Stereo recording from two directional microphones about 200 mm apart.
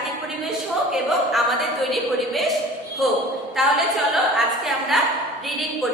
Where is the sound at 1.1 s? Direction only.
Centre (ahead or behind).